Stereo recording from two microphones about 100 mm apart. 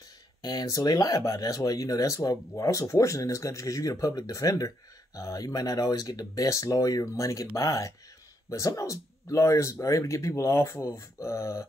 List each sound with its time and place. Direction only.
0.4 s speech: 40° left (ahead or behind)